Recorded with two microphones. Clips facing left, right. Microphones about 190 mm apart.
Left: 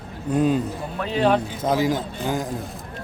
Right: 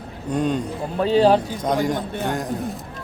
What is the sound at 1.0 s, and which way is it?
Speech, 35° right (ahead or behind).